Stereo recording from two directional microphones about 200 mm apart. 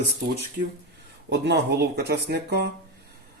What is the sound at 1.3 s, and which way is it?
Speech, 55° right (ahead or behind).